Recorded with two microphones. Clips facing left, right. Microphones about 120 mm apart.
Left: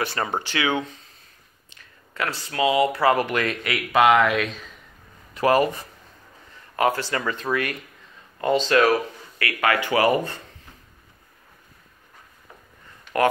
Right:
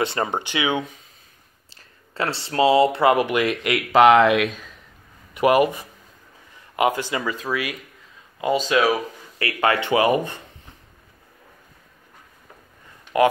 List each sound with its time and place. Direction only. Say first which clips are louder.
0.0 s speech: right 3 dB; 20° right (ahead or behind)
1.7 s speech: even; 30° right (ahead or behind); by 9.0 s 5° right (ahead or behind)
9.4 s speech: right 2 dB; 25° right (ahead or behind)